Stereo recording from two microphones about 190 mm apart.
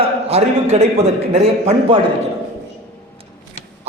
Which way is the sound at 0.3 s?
35° right (ahead or behind).